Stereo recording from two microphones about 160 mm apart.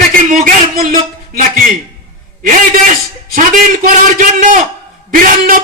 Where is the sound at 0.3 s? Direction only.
60° right (ahead or behind).